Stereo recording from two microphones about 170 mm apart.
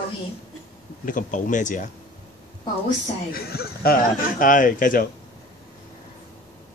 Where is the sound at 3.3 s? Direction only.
65° left (ahead or behind).